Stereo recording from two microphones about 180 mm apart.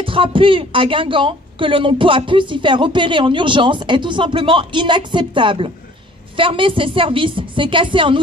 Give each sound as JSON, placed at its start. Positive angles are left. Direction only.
{"t": 0.0, "sound": "speech", "side_deg": -30}